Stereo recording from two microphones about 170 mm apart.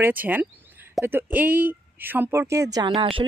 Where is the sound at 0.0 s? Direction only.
10° right (ahead or behind).